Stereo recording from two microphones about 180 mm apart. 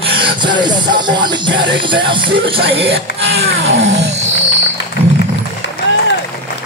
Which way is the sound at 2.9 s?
65° right (ahead or behind).